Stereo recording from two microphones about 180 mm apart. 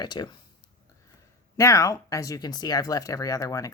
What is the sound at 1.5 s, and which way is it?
Speech, 15° left (ahead or behind).